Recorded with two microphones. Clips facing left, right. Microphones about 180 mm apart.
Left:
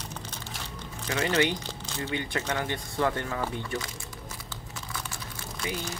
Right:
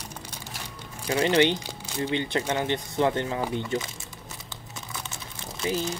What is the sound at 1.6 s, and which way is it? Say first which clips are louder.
Speech: right 4 dB; 10° right (ahead or behind).